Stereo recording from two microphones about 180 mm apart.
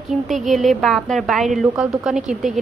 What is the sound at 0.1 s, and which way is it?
A woman's voice, centre (ahead or behind).